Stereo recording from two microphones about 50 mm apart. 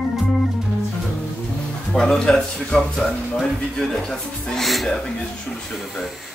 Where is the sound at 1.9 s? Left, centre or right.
Centre.